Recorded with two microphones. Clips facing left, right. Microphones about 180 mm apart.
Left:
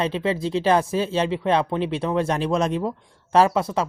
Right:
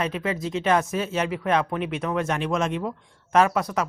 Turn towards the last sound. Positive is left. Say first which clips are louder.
# left 2 dB
turn(degrees=25)  # may be behind; listen again after turning